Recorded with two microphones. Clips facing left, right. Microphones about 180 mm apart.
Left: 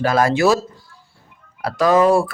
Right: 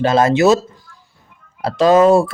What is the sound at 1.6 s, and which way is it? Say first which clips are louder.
Speech: right 4 dB; 25° right (ahead or behind).